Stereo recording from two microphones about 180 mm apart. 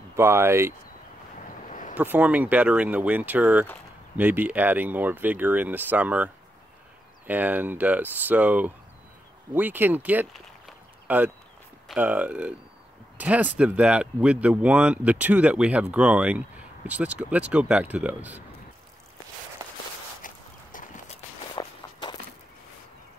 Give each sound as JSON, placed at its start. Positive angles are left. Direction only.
{"t": 0.1, "sound": "speech", "side_deg": -15}
{"t": 1.7, "sound": "a sound", "side_deg": 45}
{"t": 2.0, "sound": "speech", "side_deg": -10}
{"t": 20.2, "sound": "walk", "side_deg": 50}